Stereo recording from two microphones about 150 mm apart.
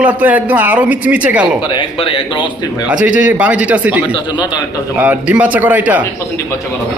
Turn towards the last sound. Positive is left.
turn(degrees=-10)  # may be behind; listen again after turning